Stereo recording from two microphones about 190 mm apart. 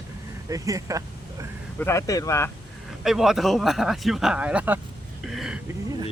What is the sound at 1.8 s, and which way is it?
Speech, 15° left (ahead or behind).